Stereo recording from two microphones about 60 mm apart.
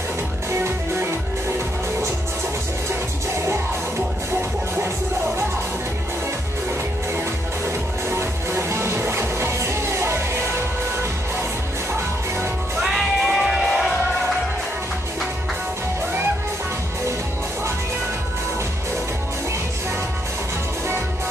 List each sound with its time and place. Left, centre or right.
0.5 s music: right
8.1 s music: right
12.8 s music: centre